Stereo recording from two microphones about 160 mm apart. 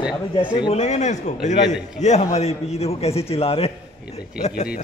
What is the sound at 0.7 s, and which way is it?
A man's voice, 45° left (ahead or behind).